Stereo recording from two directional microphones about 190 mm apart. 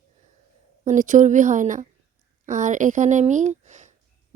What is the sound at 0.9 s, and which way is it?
Speech, 40° right (ahead or behind).